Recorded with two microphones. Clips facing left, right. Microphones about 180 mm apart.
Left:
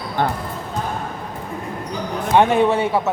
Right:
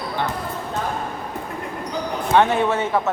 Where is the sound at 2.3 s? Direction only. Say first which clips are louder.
Left 3 dB; 15° left (ahead or behind).